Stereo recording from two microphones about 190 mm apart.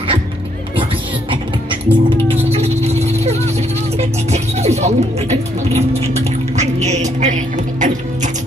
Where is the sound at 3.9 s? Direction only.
35° right (ahead or behind).